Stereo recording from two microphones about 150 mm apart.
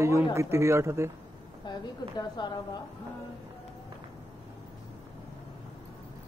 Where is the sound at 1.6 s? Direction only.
30° left (ahead or behind).